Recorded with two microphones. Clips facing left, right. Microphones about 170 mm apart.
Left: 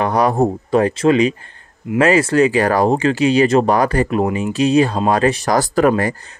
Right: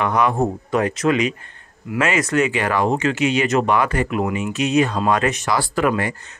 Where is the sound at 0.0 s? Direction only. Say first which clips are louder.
Left 3 dB; 35° left (ahead or behind).